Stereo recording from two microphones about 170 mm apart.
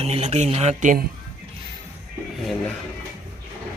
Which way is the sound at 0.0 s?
40° right (ahead or behind).